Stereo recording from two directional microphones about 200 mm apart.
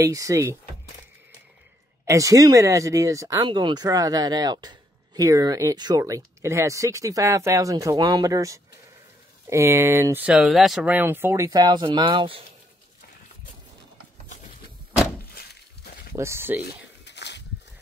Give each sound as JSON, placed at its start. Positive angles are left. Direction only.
{"t": 0.0, "sound": "speech", "side_deg": -15}
{"t": 2.0, "sound": "speech", "side_deg": -15}
{"t": 15.3, "sound": "a sound", "side_deg": 50}
{"t": 16.2, "sound": "speech", "side_deg": -10}
{"t": 17.0, "sound": "walk", "side_deg": 60}